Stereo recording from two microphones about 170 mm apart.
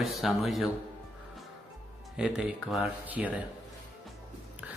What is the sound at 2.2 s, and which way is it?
Speech, 5° right (ahead or behind).